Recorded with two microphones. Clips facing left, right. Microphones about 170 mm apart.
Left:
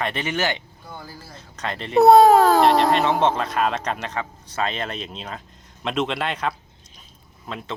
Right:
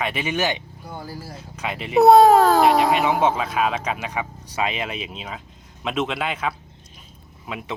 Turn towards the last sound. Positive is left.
turn(degrees=-10)  # may be behind; listen again after turning